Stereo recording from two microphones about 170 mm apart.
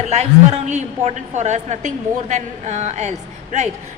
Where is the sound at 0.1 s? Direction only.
40° right (ahead or behind).